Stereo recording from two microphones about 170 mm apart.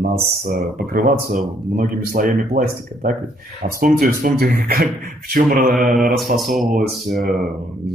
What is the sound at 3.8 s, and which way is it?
Speech, 55° right (ahead or behind).